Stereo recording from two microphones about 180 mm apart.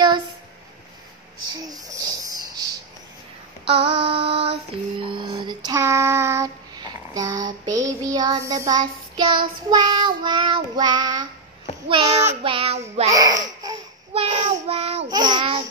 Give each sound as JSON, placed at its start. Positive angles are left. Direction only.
{"t": 1.5, "sound": "a sound", "side_deg": -20}
{"t": 3.6, "sound": "female singing", "side_deg": -30}
{"t": 11.9, "sound": "child singing", "side_deg": -30}
{"t": 13.1, "sound": "a sound", "side_deg": -20}
{"t": 14.1, "sound": "child singing", "side_deg": -35}
{"t": 15.0, "sound": "child singing", "side_deg": -25}